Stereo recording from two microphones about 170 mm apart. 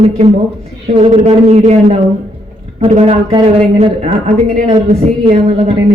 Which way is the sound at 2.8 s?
35° right (ahead or behind).